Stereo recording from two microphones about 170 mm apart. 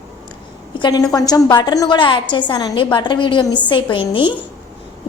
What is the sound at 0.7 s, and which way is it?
A woman's voice, 25° left (ahead or behind).